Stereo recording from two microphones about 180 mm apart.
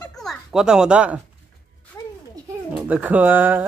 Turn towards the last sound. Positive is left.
turn(degrees=-10)  # may be behind; listen again after turning